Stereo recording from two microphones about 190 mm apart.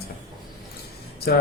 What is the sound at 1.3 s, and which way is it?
Speech, 60° left (ahead or behind).